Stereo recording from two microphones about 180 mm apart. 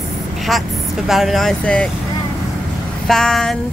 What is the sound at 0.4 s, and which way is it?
Speech, centre (ahead or behind).